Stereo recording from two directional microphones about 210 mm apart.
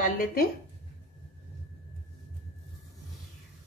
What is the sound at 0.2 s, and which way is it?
Speech, 45° left (ahead or behind).